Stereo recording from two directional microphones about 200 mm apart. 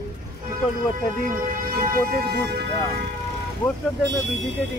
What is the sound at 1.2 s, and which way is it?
Speech, 45° right (ahead or behind).